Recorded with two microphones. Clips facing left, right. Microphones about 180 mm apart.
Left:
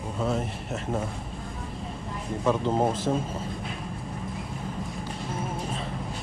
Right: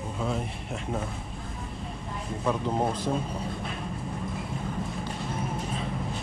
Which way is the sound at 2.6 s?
25° left (ahead or behind).